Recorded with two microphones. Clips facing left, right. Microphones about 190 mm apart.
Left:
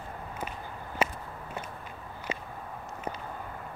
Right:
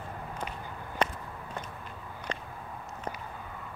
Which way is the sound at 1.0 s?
5° left (ahead or behind).